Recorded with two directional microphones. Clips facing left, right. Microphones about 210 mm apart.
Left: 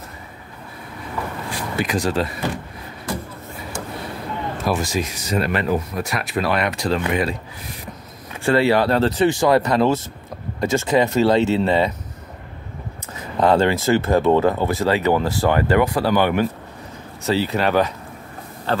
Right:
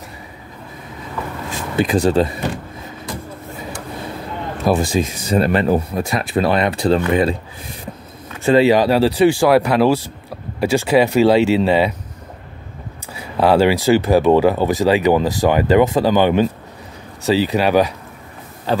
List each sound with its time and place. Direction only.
1.5 s speech: 30° right (ahead or behind)
4.6 s speech: 30° right (ahead or behind)
8.5 s speech: 15° right (ahead or behind)
13.1 s speech: 10° right (ahead or behind)